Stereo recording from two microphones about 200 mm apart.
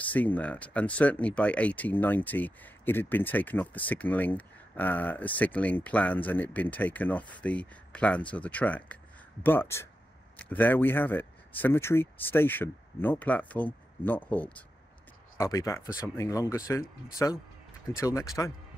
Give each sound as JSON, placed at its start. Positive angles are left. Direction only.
{"t": 0.0, "sound": "speech", "side_deg": 10}